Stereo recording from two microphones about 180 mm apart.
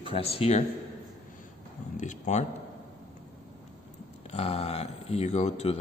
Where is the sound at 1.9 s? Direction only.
40° left (ahead or behind).